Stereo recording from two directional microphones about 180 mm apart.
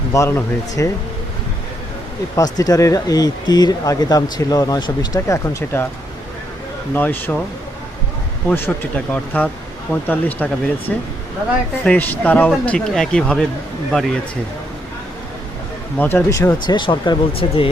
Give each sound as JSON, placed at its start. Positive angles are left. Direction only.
{"t": 0.1, "sound": "speech", "side_deg": 15}
{"t": 2.3, "sound": "speech", "side_deg": 20}
{"t": 6.9, "sound": "speech", "side_deg": 10}
{"t": 8.4, "sound": "speech", "side_deg": 10}
{"t": 16.0, "sound": "speech", "side_deg": 10}